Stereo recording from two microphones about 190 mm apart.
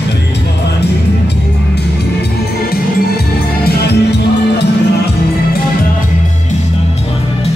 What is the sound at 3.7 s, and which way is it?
Music, 60° left (ahead or behind).